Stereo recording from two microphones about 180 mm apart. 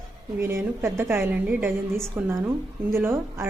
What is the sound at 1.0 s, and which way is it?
A woman's voice, 15° right (ahead or behind).